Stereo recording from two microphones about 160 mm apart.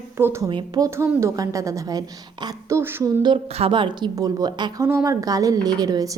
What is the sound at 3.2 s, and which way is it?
A woman's voice, 35° right (ahead or behind).